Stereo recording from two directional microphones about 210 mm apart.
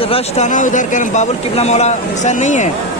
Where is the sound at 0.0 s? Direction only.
30° left (ahead or behind).